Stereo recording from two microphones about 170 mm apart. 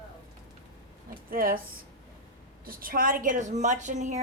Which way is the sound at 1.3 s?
55° right (ahead or behind).